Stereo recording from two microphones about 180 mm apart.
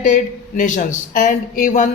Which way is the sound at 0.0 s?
45° left (ahead or behind).